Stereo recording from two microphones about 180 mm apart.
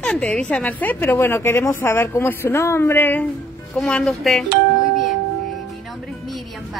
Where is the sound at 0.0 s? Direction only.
5° left (ahead or behind).